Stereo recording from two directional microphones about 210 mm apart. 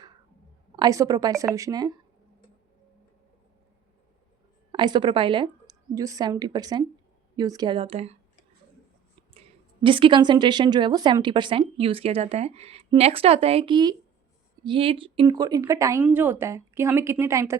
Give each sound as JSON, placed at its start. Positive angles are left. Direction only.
{"t": 0.8, "sound": "speech", "side_deg": -15}
{"t": 4.7, "sound": "a woman's voice", "side_deg": -20}
{"t": 9.3, "sound": "a woman's voice", "side_deg": -25}